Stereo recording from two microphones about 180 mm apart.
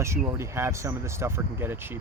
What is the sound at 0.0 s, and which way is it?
Speech, 15° right (ahead or behind).